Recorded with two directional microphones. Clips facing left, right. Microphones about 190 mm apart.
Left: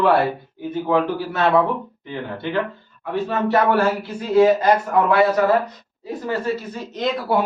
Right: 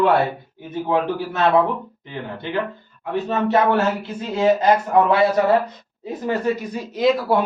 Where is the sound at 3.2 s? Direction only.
20° right (ahead or behind).